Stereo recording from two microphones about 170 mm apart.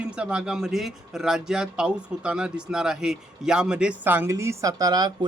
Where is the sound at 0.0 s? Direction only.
5° right (ahead or behind).